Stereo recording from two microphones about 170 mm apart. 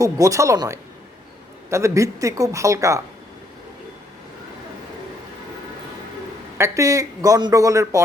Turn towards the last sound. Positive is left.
turn(degrees=-20)  # may be behind; listen again after turning